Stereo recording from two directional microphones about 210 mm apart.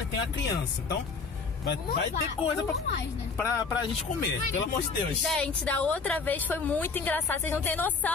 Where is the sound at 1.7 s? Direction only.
45° left (ahead or behind).